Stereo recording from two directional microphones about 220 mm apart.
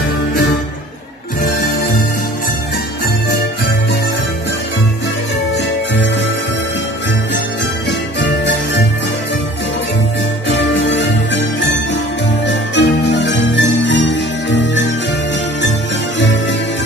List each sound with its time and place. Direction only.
8.2 s music: 55° left (ahead or behind)
10.5 s jingle bell: 55° left (ahead or behind)